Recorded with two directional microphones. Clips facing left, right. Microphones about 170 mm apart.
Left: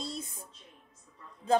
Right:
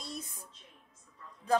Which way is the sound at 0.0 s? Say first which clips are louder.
Left 4 dB; 25° left (ahead or behind).